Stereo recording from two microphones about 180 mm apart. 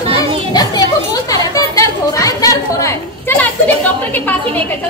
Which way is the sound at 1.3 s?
20° left (ahead or behind).